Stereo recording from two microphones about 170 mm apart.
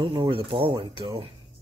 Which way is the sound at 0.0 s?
30° right (ahead or behind).